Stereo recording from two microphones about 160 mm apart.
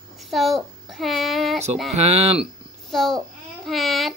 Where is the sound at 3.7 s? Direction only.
Centre (ahead or behind).